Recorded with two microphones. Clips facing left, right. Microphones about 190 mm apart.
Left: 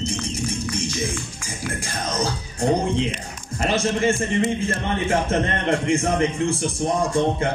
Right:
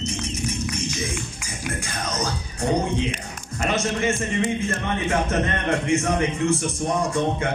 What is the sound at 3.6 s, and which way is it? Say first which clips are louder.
A man's voice: left 3 dB; 30° left (ahead or behind).